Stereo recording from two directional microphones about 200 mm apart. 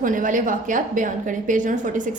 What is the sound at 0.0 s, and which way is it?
A woman's voice, 40° right (ahead or behind).